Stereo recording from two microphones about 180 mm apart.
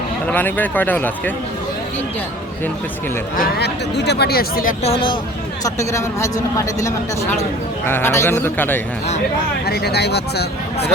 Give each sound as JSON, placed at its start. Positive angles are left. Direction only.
{"t": 0.3, "sound": "speech", "side_deg": 10}
{"t": 3.3, "sound": "speech", "side_deg": 60}
{"t": 4.8, "sound": "speech", "side_deg": 30}
{"t": 5.6, "sound": "speech", "side_deg": 15}
{"t": 9.6, "sound": "speech", "side_deg": 60}